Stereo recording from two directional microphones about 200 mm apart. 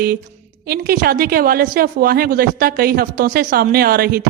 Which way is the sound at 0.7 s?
50° right (ahead or behind).